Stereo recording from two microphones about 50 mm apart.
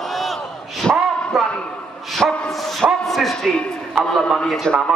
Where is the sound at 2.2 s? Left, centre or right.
Right.